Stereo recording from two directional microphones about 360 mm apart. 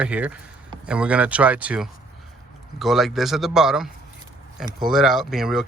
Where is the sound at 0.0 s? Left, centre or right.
Centre.